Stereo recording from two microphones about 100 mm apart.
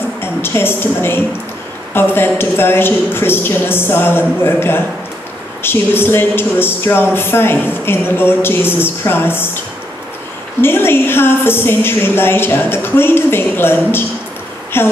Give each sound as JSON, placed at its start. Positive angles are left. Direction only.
{"t": 0.2, "sound": "a woman's voice", "side_deg": 25}
{"t": 10.6, "sound": "speech", "side_deg": 20}